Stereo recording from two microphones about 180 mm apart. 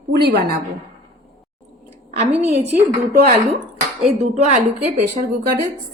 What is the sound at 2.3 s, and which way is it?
Speech, 35° right (ahead or behind).